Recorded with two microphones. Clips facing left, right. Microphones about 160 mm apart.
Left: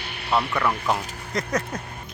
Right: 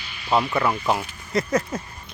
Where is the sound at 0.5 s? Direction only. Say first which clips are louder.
Right 2 dB; 5° right (ahead or behind).